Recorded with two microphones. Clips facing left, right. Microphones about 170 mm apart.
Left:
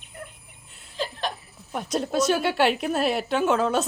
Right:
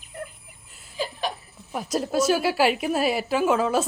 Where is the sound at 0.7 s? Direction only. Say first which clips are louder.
Even; centre (ahead or behind).